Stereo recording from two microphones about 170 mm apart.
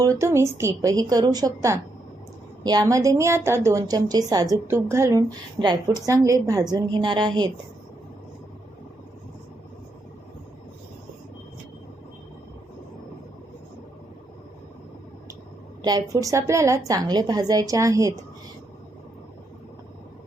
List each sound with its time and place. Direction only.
0.0 s a woman's voice: 20° right (ahead or behind)
15.8 s a woman's voice: 20° right (ahead or behind)